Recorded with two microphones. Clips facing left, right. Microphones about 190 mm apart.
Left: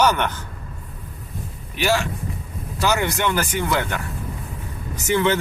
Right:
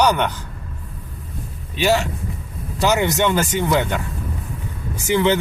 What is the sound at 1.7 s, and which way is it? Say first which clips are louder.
Speech: right 3 dB; 20° right (ahead or behind).